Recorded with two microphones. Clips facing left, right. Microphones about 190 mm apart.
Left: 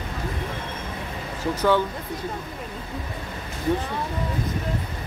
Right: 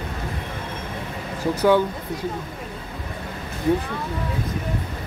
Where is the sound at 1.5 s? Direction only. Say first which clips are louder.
Right 3 dB; 15° right (ahead or behind).